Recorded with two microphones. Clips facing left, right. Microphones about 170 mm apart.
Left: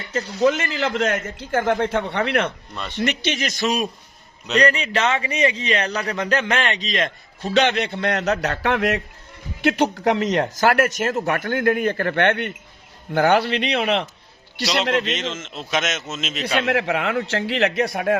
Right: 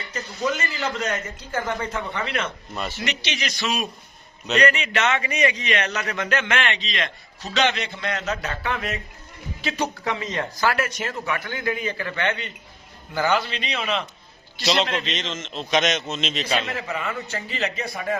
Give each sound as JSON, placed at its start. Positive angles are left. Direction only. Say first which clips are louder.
{"t": 0.3, "sound": "a man's voice", "louder": "left 7 dB", "side_deg": 50}
{"t": 1.8, "sound": "speech", "louder": "left 7 dB", "side_deg": 75}
{"t": 2.7, "sound": "speech", "louder": "right 2 dB", "side_deg": -5}
{"t": 3.0, "sound": "a man's voice", "louder": "left 7 dB", "side_deg": 50}
{"t": 9.6, "sound": "a man's voice", "louder": "left 8 dB", "side_deg": 50}
{"t": 10.2, "sound": "speech", "louder": "left 8 dB", "side_deg": 90}
{"t": 10.6, "sound": "a man's voice", "louder": "left 4 dB", "side_deg": 50}
{"t": 14.6, "sound": "a man's voice", "louder": "right 1 dB", "side_deg": 0}
{"t": 14.8, "sound": "a man's voice", "louder": "left 7 dB", "side_deg": 60}
{"t": 15.1, "sound": "a man's voice", "louder": "left 3 dB", "side_deg": 10}
{"t": 16.6, "sound": "speech", "louder": "left 7 dB", "side_deg": 70}